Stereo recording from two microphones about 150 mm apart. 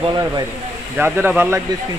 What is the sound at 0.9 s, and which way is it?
Speech, 10° right (ahead or behind).